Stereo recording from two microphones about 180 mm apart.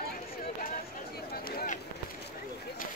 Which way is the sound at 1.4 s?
55° left (ahead or behind).